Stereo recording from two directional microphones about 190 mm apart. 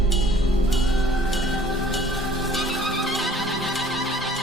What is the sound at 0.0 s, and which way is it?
Music, centre (ahead or behind).